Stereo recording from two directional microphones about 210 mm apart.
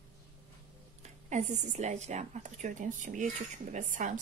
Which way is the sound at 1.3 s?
35° right (ahead or behind).